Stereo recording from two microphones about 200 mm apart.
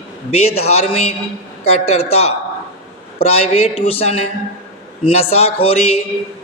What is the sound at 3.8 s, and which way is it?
A man's voice, 30° left (ahead or behind).